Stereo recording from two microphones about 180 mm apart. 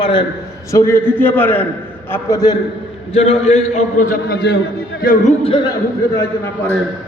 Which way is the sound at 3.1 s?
35° left (ahead or behind).